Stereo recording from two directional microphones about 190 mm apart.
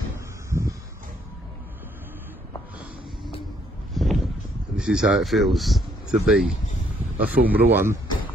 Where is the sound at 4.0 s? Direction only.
Centre (ahead or behind).